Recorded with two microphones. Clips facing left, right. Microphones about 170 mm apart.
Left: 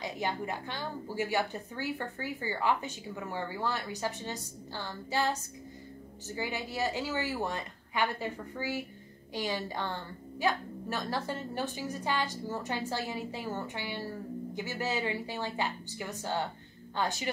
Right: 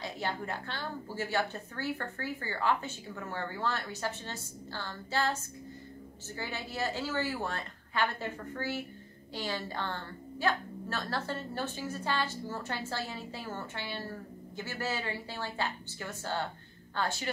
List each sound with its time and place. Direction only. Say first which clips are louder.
0.0 s a woman's voice: left 2 dB; 15° left (ahead or behind)